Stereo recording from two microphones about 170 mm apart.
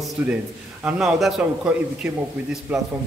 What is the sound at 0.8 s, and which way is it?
A man's voice, 5° right (ahead or behind).